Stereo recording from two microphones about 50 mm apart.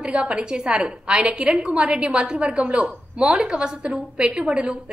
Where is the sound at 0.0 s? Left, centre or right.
Right.